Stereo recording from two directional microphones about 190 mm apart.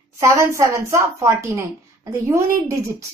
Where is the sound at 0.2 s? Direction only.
15° right (ahead or behind).